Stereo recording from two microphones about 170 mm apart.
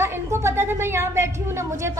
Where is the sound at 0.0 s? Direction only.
15° right (ahead or behind).